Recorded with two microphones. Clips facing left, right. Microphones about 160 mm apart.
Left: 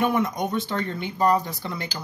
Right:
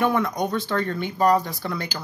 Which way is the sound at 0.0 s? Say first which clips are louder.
Right 1 dB; 20° left (ahead or behind).